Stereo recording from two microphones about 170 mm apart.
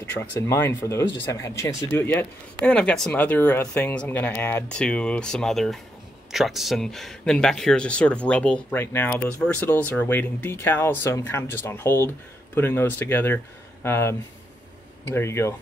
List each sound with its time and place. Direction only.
0.2 s speech: 15° left (ahead or behind)